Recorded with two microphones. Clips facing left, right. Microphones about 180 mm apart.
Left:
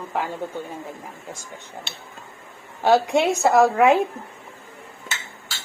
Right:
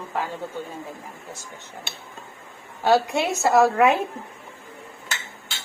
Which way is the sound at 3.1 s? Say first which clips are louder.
Left 2 dB; 15° left (ahead or behind).